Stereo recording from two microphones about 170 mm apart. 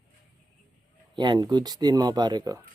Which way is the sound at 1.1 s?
25° right (ahead or behind).